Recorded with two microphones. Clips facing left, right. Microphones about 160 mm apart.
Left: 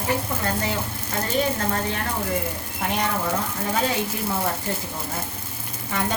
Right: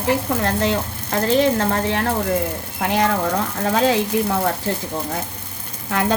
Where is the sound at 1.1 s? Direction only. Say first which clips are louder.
Right 7 dB; 85° right.